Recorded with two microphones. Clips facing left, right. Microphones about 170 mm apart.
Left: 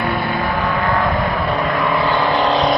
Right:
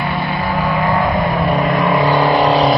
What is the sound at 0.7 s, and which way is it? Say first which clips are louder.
Vehicle: right 3 dB; 15° right (ahead or behind).